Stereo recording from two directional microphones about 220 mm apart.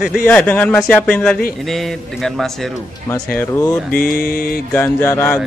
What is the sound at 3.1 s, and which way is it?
Speech, 10° left (ahead or behind).